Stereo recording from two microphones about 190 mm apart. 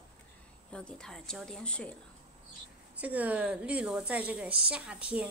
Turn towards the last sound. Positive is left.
turn(degrees=-5)  # may be behind; listen again after turning